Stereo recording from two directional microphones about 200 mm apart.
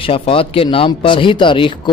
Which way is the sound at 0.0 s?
25° left (ahead or behind).